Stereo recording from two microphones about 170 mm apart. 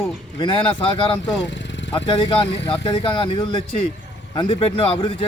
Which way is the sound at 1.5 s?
90° left.